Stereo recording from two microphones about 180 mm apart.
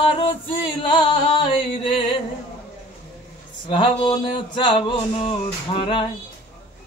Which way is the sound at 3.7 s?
25° left (ahead or behind).